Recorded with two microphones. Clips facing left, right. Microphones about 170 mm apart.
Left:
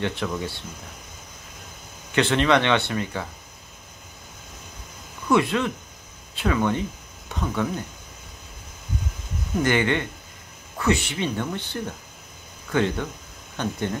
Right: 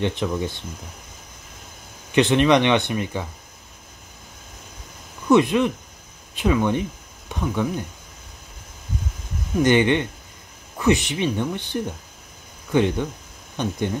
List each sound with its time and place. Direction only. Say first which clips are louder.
0.0 s speech: right 3 dB; 20° right (ahead or behind)
2.1 s speech: right 3 dB; 15° right (ahead or behind)
5.3 s speech: right 4 dB; 15° right (ahead or behind)
9.6 s speech: right 5 dB; 20° right (ahead or behind)